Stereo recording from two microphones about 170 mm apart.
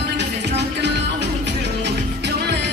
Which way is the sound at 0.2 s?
90° right.